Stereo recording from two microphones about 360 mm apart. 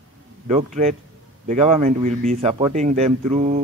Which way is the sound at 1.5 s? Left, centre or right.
Right.